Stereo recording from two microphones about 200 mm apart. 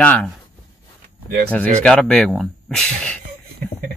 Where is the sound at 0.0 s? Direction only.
5° left (ahead or behind).